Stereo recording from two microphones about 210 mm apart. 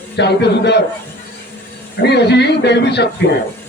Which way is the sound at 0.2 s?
55° left (ahead or behind).